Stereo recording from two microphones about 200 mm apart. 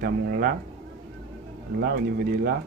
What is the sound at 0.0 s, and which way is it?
Speech, 50° right (ahead or behind).